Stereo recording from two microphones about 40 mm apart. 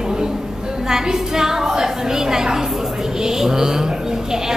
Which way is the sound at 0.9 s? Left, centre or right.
Centre.